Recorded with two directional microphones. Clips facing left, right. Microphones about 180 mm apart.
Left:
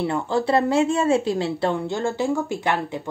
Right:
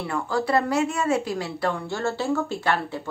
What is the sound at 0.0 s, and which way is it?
A woman's voice, 25° left (ahead or behind).